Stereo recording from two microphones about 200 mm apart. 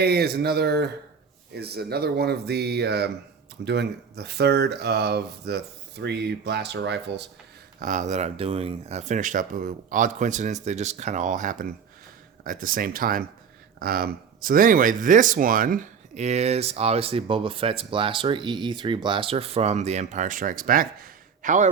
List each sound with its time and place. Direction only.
0.0 s speech: 55° right (ahead or behind)
7.8 s speech: 40° right (ahead or behind)